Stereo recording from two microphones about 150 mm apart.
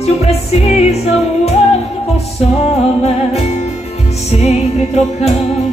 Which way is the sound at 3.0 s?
45° left (ahead or behind).